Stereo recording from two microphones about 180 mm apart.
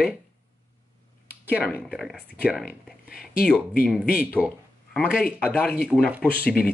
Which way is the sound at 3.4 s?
10° left (ahead or behind).